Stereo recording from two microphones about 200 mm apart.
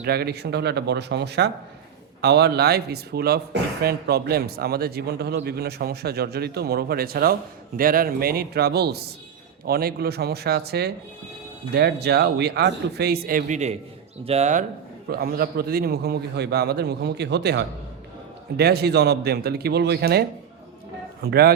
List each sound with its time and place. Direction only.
0.0 s speech: 50° right (ahead or behind); by 14.6 s 35° right (ahead or behind)
15.1 s speech: 50° right (ahead or behind)
21.2 s speech: 50° right (ahead or behind)